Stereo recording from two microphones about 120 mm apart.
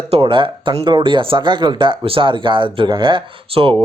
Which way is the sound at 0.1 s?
50° right (ahead or behind).